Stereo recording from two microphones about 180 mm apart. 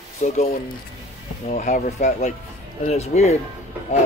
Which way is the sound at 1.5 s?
45° left (ahead or behind).